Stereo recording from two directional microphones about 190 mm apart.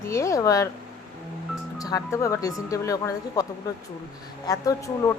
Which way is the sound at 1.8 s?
20° left (ahead or behind).